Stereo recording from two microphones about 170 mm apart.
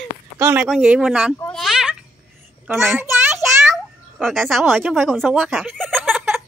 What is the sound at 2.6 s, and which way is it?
Speech, 15° right (ahead or behind).